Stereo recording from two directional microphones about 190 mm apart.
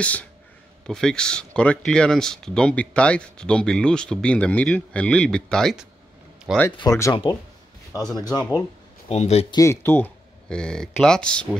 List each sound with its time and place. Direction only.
0.0 s speech: 5° left (ahead or behind)
6.8 s speech: 15° left (ahead or behind)
8.4 s speech: 15° left (ahead or behind)
9.1 s speech: 35° left (ahead or behind)
9.6 s speech: 15° left (ahead or behind)